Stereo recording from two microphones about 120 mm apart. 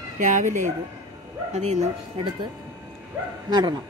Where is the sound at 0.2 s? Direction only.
90° right.